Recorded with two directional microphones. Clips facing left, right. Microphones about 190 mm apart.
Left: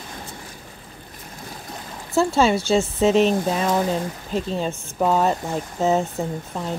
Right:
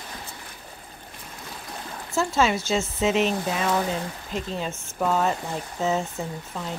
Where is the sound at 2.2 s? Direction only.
30° left (ahead or behind).